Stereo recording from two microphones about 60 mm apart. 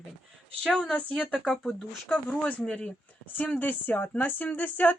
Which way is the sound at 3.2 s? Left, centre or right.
Left.